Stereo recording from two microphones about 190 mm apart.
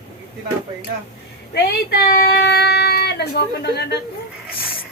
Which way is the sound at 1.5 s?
60° left (ahead or behind).